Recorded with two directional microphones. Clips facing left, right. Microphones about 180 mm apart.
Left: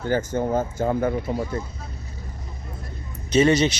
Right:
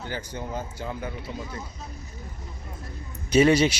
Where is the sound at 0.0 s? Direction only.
45° left (ahead or behind).